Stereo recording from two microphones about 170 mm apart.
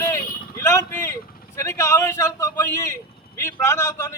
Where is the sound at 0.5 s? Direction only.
20° left (ahead or behind).